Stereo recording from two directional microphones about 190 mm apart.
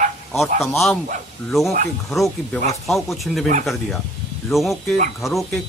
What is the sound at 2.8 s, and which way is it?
Speech, centre (ahead or behind).